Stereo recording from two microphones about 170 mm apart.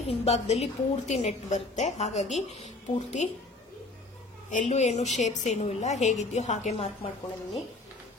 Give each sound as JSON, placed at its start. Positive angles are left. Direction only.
{"t": 0.1, "sound": "a woman's voice", "side_deg": 40}
{"t": 4.5, "sound": "a woman's voice", "side_deg": 45}